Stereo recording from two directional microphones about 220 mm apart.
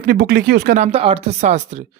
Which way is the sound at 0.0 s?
40° right (ahead or behind).